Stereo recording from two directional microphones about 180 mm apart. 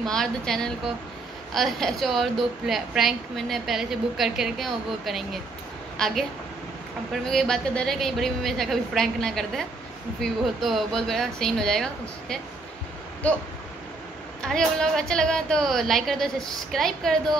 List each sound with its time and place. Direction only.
0.0 s a woman's voice: centre (ahead or behind)
14.4 s a woman's voice: 5° left (ahead or behind)